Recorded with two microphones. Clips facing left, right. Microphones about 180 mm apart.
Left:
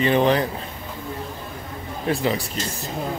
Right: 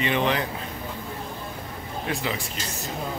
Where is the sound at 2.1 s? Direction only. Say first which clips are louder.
Left 7 dB; 40° left (ahead or behind).